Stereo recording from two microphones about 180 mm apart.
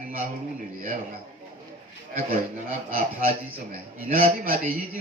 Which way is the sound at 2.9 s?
50° right (ahead or behind).